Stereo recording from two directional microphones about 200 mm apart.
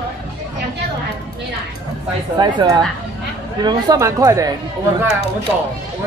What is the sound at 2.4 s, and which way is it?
A woman's voice, 20° right (ahead or behind).